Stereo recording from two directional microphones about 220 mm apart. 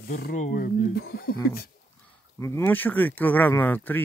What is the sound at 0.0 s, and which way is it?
Speech, 45° left (ahead or behind).